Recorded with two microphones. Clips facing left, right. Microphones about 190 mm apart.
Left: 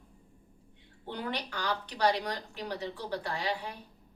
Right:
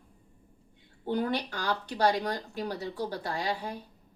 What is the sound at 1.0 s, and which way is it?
Speech, 45° right (ahead or behind).